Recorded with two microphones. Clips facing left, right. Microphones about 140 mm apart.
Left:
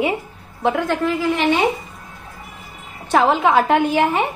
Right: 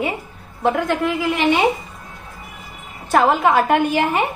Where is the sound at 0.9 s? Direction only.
10° right (ahead or behind).